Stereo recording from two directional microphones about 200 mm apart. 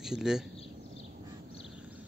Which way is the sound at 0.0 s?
5° right (ahead or behind).